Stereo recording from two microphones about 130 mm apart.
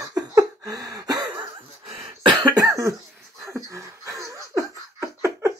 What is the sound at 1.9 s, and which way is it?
Cough, 45° right (ahead or behind).